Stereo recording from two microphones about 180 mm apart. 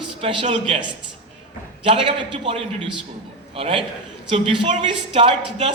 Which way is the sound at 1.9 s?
30° right (ahead or behind).